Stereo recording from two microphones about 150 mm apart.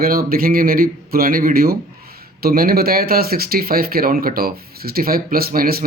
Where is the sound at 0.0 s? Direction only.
80° right.